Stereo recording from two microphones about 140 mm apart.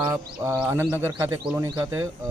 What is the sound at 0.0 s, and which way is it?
Speech, 25° right (ahead or behind).